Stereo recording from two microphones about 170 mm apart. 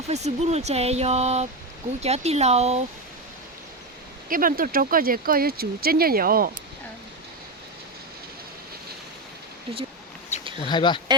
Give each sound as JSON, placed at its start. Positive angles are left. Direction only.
{"t": 0.1, "sound": "speech", "side_deg": -40}
{"t": 4.3, "sound": "speech", "side_deg": -55}
{"t": 10.6, "sound": "speech", "side_deg": 25}